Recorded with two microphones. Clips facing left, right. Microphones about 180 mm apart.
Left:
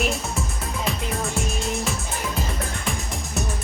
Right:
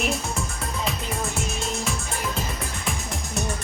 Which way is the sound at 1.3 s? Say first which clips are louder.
Left 2 dB; centre (ahead or behind).